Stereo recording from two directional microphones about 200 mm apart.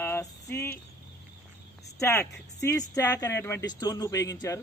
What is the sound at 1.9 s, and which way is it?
A man's voice, 15° left (ahead or behind).